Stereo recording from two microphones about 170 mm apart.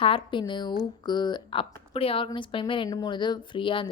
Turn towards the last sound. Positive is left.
turn(degrees=30)  # may be behind; listen again after turning